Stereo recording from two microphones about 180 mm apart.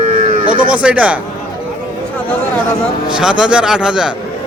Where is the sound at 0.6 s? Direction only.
5° right (ahead or behind).